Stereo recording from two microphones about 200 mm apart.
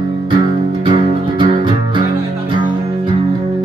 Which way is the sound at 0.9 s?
25° right (ahead or behind).